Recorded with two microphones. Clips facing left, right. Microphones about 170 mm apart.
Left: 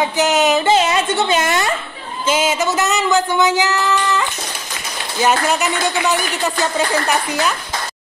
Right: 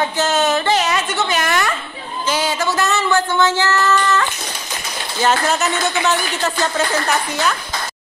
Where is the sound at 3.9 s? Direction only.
15° left (ahead or behind).